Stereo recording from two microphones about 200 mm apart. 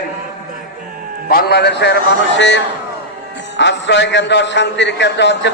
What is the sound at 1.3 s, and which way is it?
A man's voice, 50° left (ahead or behind).